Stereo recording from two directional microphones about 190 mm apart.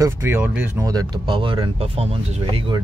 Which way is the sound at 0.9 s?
20° right (ahead or behind).